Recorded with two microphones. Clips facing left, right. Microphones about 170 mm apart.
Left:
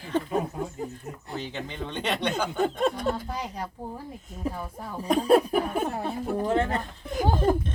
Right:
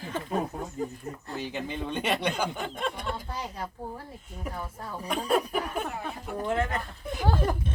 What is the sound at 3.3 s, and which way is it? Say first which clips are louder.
Speech: left 3 dB; 10° left (ahead or behind).